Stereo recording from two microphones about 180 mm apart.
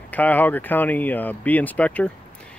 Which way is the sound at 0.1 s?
10° left (ahead or behind).